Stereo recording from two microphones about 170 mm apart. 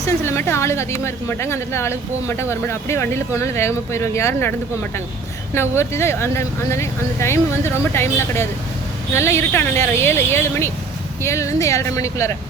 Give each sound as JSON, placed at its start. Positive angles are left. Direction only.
{"t": 0.0, "sound": "speech", "side_deg": 15}